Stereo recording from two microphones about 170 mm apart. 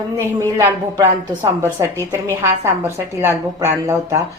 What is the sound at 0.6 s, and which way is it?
A woman's voice, 15° right (ahead or behind).